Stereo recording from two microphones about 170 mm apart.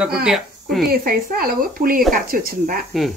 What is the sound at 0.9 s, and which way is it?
Speech, 60° right (ahead or behind).